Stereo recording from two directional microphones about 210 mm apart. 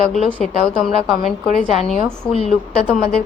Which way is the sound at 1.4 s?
35° left (ahead or behind).